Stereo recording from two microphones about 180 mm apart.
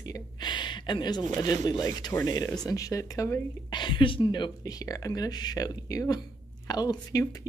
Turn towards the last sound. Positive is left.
turn(degrees=20)  # may be behind; listen again after turning